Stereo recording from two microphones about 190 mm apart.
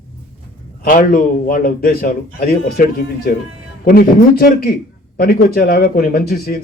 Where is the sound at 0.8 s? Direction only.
45° left (ahead or behind).